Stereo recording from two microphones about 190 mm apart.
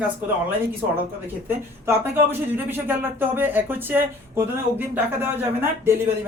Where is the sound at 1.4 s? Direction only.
10° right (ahead or behind).